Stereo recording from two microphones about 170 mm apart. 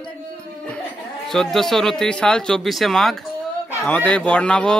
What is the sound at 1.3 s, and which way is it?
Speech, centre (ahead or behind).